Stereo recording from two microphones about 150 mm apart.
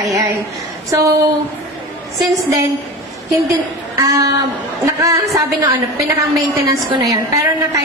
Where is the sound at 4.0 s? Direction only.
20° right (ahead or behind).